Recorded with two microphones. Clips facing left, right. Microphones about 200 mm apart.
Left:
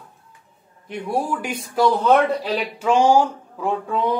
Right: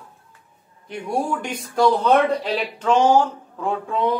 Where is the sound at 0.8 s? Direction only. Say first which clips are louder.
Even; 5° left (ahead or behind).